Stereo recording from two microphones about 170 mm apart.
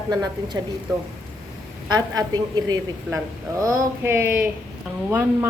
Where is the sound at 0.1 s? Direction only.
25° right (ahead or behind).